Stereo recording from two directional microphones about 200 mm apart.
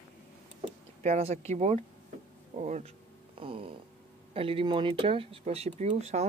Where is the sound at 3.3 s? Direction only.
25° right (ahead or behind).